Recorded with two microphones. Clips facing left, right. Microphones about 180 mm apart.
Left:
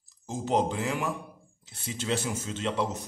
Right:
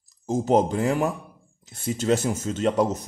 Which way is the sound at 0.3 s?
45° right (ahead or behind).